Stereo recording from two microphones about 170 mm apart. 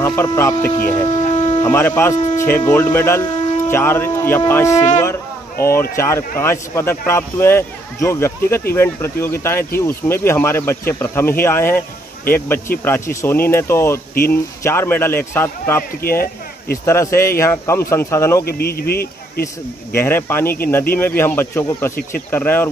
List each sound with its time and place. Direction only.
0.0 s a man's voice: 15° left (ahead or behind)
1.1 s a sound: 45° left (ahead or behind)
1.6 s a man's voice: 15° left (ahead or behind)
12.8 s a man's voice: 15° left (ahead or behind)
16.0 s speech: 60° left (ahead or behind)
16.8 s a man's voice: 15° left (ahead or behind)
18.4 s speech: 65° left (ahead or behind)
19.4 s a man's voice: 15° left (ahead or behind)